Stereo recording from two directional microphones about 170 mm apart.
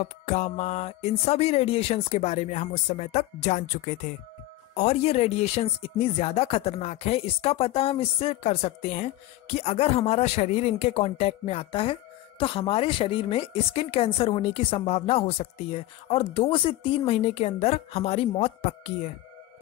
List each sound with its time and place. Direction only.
0.0 s speech: 40° left (ahead or behind)